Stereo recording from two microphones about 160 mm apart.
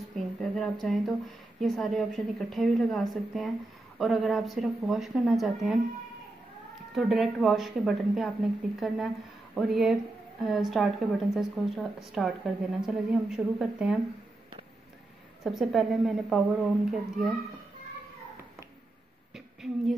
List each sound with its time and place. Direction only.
0.1 s speech: centre (ahead or behind)
6.9 s speech: centre (ahead or behind)
15.4 s speech: centre (ahead or behind)
19.3 s a sound: centre (ahead or behind)